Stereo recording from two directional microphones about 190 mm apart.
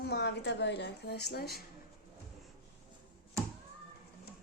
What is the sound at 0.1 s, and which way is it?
A woman's voice, 65° left (ahead or behind).